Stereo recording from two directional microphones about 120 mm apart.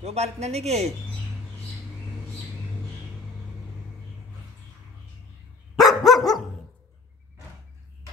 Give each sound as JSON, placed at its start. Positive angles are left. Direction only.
{"t": 0.0, "sound": "speech", "side_deg": -65}
{"t": 5.8, "sound": "dog", "side_deg": 0}